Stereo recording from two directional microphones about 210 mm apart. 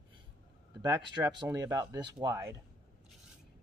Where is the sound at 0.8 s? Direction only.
20° right (ahead or behind).